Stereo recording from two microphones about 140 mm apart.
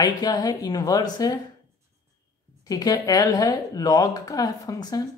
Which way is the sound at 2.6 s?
30° left (ahead or behind).